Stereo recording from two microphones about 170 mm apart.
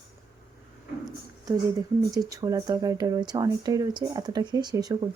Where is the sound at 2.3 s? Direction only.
20° right (ahead or behind).